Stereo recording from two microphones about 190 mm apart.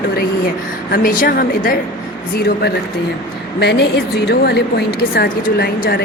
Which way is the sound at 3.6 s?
60° left (ahead or behind).